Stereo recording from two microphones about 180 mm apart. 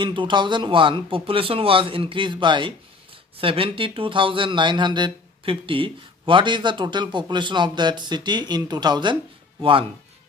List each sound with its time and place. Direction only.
0.0 s speech: 25° right (ahead or behind)